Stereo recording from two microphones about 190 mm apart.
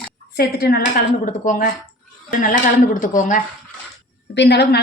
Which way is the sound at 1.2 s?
45° left (ahead or behind).